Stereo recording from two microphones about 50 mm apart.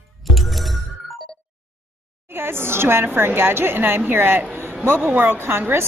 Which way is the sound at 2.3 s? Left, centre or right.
Right.